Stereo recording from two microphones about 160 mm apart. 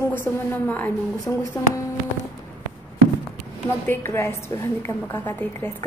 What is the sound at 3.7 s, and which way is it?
A woman's voice, 15° left (ahead or behind).